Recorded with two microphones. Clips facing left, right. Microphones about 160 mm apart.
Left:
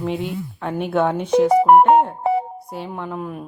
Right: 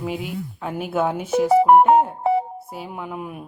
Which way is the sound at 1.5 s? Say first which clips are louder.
Even; 65° left (ahead or behind).